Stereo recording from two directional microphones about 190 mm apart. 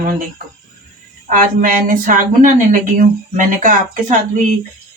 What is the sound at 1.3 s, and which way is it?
Speech, 45° right (ahead or behind).